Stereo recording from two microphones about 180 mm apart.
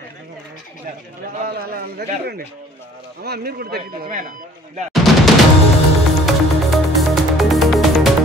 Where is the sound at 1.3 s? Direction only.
55° right (ahead or behind).